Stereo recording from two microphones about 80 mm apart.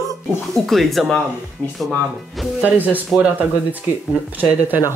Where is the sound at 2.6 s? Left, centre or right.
Right.